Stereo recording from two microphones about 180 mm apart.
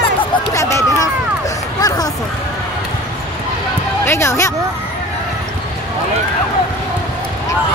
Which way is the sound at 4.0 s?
15° left (ahead or behind).